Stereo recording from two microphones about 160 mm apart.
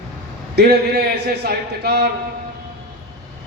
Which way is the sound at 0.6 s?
75° right (ahead or behind).